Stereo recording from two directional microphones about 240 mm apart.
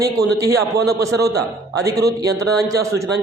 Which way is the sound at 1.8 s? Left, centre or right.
Centre.